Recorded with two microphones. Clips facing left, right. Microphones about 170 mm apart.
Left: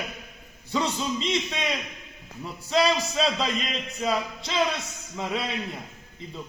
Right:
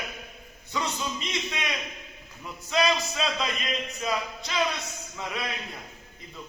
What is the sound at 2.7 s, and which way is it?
A man's voice, 30° left (ahead or behind).